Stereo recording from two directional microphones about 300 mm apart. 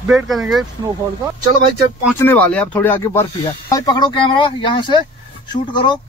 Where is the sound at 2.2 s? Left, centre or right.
Centre.